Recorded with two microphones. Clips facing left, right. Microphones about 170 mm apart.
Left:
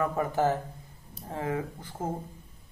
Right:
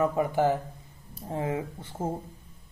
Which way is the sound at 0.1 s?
15° right (ahead or behind).